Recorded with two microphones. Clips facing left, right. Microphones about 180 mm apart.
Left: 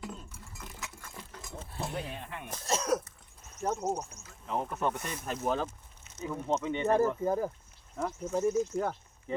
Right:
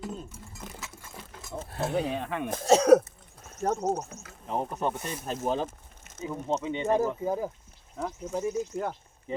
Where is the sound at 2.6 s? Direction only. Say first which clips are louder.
Right 12 dB; 80° right.